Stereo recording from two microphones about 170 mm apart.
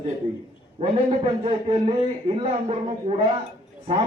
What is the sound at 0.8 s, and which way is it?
A man's voice, 35° right (ahead or behind).